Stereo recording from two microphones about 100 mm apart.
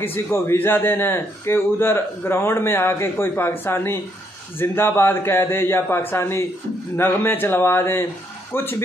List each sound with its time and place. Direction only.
0.0 s a man's voice: 25° left (ahead or behind)